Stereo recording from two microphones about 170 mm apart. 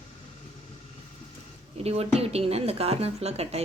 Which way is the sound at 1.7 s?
35° right (ahead or behind).